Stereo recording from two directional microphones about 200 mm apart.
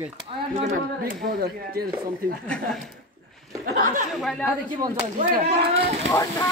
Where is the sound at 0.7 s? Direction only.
50° right (ahead or behind).